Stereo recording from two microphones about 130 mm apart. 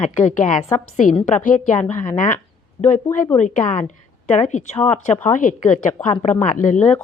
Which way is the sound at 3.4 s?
65° left (ahead or behind).